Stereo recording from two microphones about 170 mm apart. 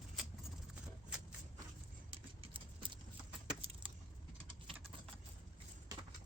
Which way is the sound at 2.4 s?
30° right (ahead or behind).